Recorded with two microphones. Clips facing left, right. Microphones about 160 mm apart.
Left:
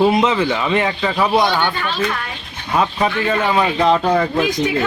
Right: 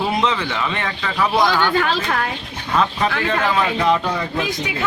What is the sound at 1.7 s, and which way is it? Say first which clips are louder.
Speech: right 2 dB; 90° right.